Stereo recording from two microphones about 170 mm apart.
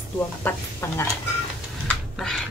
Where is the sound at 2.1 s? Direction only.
Centre (ahead or behind).